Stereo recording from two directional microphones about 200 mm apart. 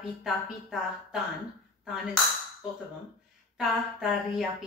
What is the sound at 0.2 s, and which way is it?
A woman's voice, centre (ahead or behind).